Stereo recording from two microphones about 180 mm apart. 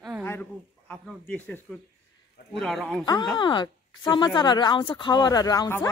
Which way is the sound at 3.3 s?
25° left (ahead or behind).